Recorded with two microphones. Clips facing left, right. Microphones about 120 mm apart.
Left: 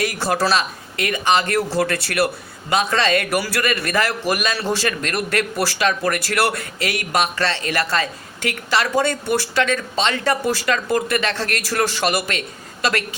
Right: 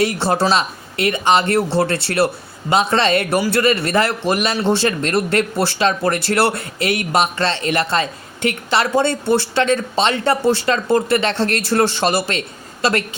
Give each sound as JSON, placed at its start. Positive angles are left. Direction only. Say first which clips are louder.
{"t": 0.0, "sound": "speech", "louder": "right 3 dB", "side_deg": -25}